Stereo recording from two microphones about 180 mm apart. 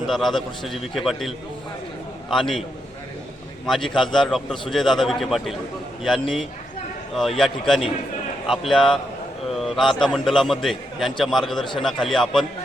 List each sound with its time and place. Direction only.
0.1 s a man's voice: centre (ahead or behind)
2.3 s a man's voice: centre (ahead or behind)
3.7 s a man's voice: centre (ahead or behind)